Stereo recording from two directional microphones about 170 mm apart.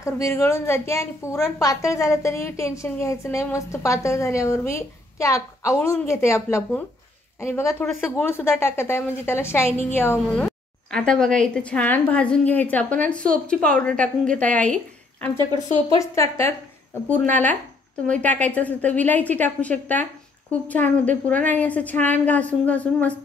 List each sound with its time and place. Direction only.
0.0 s a woman's voice: 15° left (ahead or behind)
15.3 s a woman's voice: 25° right (ahead or behind)
16.0 s a woman's voice: 15° left (ahead or behind)